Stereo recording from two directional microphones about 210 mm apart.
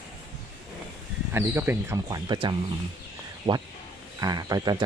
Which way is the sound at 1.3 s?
10° right (ahead or behind).